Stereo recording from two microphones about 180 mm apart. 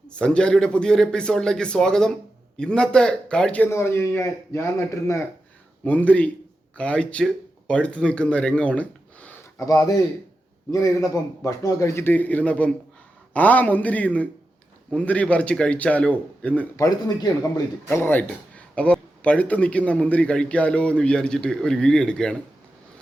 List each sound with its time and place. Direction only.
0.1 s a man's voice: 5° left (ahead or behind)
16.7 s a man's voice: 20° left (ahead or behind)